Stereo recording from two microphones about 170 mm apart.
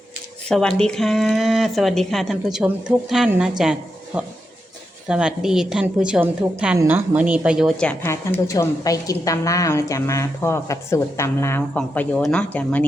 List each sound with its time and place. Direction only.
0.4 s speech: 5° left (ahead or behind)
7.8 s a woman's voice: 10° left (ahead or behind)